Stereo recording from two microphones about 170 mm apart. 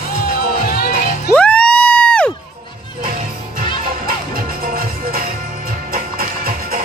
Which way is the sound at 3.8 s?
55° right (ahead or behind).